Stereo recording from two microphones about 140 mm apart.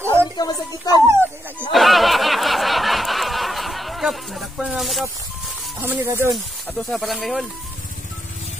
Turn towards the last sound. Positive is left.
turn(degrees=0)  # may be behind; listen again after turning